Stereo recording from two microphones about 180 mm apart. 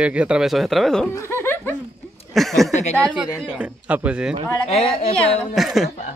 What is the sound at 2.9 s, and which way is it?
Speech, centre (ahead or behind).